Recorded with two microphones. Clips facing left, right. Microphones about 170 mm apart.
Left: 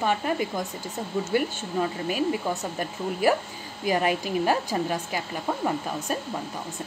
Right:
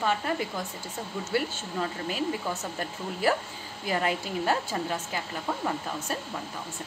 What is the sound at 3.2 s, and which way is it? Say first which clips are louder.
A woman's voice: left 3 dB; 15° left (ahead or behind).